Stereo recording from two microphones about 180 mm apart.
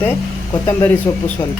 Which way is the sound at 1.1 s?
15° left (ahead or behind).